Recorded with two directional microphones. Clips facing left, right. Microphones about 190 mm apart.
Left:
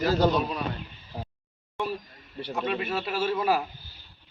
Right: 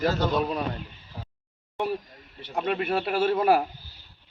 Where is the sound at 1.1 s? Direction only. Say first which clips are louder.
Left 5 dB; 35° left (ahead or behind).